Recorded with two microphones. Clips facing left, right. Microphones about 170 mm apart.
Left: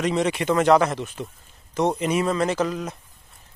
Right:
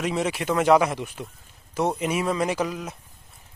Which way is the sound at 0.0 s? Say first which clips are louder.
Left 3 dB; 5° right (ahead or behind).